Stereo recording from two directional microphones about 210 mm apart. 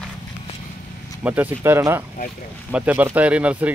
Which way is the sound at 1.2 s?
10° right (ahead or behind).